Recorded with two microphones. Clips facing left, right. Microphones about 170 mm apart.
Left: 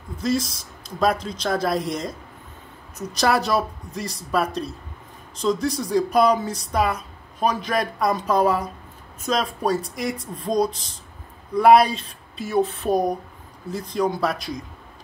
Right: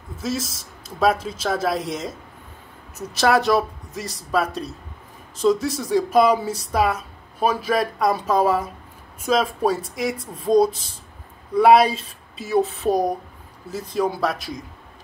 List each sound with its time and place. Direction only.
0.2 s speech: centre (ahead or behind)